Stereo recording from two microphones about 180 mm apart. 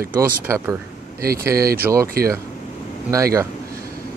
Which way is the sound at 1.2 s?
55° right (ahead or behind).